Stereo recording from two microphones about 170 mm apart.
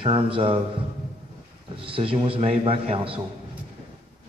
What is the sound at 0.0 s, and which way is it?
Speech, 30° right (ahead or behind).